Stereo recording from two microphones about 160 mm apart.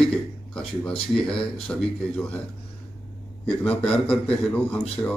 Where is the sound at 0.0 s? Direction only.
5° left (ahead or behind).